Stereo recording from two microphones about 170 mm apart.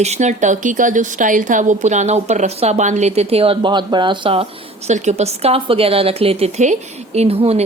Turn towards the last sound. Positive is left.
turn(degrees=-35)  # may be behind; listen again after turning